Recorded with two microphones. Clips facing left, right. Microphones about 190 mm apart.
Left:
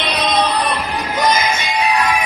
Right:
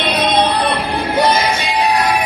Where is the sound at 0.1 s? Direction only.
30° right (ahead or behind).